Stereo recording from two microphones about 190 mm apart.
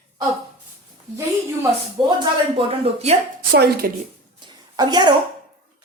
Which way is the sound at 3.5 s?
50° right (ahead or behind).